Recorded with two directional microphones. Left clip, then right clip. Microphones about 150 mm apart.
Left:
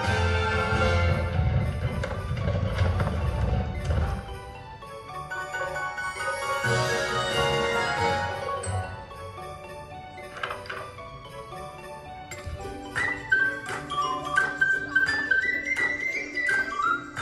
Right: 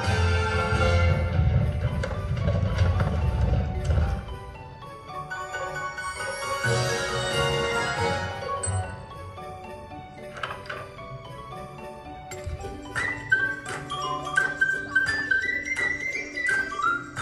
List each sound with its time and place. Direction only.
0.0 s music: 15° right (ahead or behind)
5.5 s music: 15° right (ahead or behind)
12.9 s music: 15° right (ahead or behind)